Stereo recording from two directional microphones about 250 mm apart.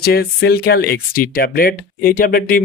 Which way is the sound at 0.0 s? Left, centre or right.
Left.